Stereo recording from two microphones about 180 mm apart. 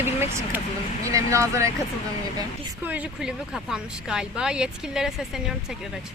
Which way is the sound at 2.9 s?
5° right (ahead or behind).